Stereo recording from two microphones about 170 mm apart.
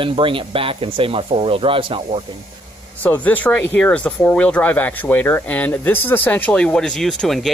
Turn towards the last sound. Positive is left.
turn(degrees=0)  # may be behind; listen again after turning